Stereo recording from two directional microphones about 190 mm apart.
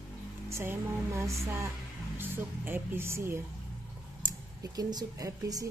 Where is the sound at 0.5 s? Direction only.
15° right (ahead or behind).